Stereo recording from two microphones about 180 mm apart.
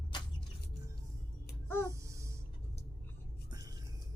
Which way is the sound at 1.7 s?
15° left (ahead or behind).